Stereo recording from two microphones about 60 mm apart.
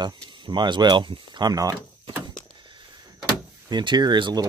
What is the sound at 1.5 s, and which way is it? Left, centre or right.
Speech, right.